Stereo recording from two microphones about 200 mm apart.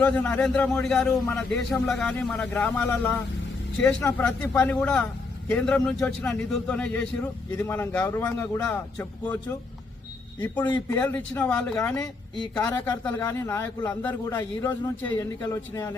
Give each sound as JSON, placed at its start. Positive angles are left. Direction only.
{"t": 0.0, "sound": "a man's voice", "side_deg": 5}
{"t": 4.5, "sound": "a man's voice", "side_deg": 10}
{"t": 10.7, "sound": "a man's voice", "side_deg": 25}
{"t": 10.9, "sound": "a man's voice", "side_deg": 10}